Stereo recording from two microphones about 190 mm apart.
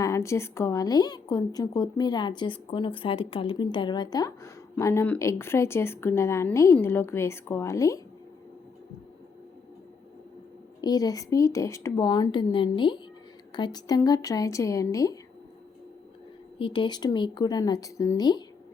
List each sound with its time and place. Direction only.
0.0 s a woman's voice: 15° left (ahead or behind)
10.8 s speech: 20° left (ahead or behind)
16.6 s speech: 25° left (ahead or behind)